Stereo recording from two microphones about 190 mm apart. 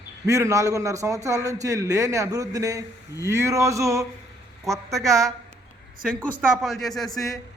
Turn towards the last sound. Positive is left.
turn(degrees=0)  # may be behind; listen again after turning